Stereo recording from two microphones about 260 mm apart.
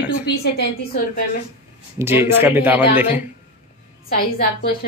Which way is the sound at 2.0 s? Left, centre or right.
Centre.